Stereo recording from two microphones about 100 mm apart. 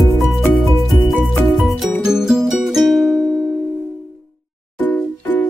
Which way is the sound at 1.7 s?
Centre (ahead or behind).